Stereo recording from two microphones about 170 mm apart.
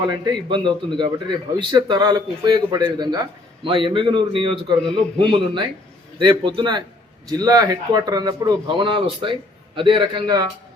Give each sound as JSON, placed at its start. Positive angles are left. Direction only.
{"t": 0.0, "sound": "speech", "side_deg": -30}
{"t": 4.8, "sound": "a man's voice", "side_deg": 5}
{"t": 5.1, "sound": "speech", "side_deg": -30}